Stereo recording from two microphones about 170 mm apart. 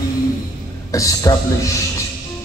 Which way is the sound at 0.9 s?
20° left (ahead or behind).